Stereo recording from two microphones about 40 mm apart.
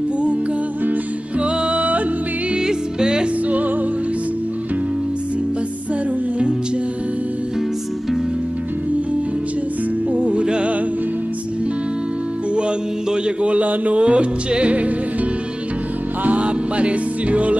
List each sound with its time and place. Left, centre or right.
1.4 s music: right
2.5 s music: right
3.4 s music: right
10.1 s music: right
12.5 s mantra: right
16.3 s music: right